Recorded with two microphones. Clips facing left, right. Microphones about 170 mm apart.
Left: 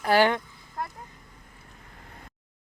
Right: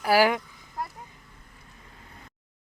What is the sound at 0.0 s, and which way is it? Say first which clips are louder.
Speech: even; 5° right (ahead or behind).